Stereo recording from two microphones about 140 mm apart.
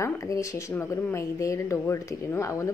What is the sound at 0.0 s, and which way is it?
Speech, 25° left (ahead or behind).